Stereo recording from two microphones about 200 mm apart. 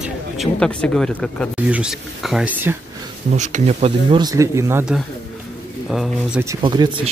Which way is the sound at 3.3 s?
35° right (ahead or behind).